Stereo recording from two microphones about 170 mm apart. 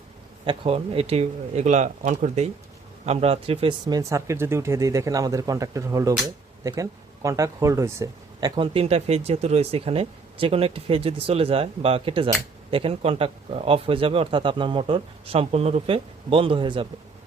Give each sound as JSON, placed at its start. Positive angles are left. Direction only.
{"t": 0.4, "sound": "speech", "side_deg": -35}